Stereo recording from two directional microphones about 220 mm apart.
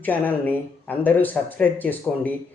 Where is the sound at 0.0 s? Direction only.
10° left (ahead or behind).